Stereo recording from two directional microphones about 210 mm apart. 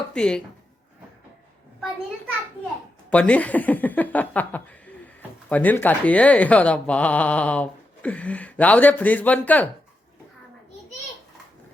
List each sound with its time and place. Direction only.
0.1 s speech: 5° left (ahead or behind)
3.1 s speech: 5° left (ahead or behind)